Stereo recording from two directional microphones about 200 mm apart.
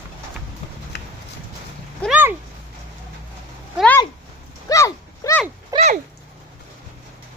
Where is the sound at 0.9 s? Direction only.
55° left (ahead or behind).